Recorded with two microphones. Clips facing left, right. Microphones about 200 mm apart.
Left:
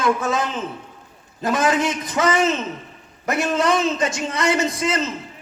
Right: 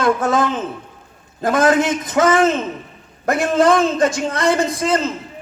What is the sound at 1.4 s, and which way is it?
A man's voice, 50° right (ahead or behind).